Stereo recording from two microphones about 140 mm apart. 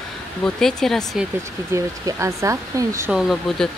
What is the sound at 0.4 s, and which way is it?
Speech, 5° left (ahead or behind).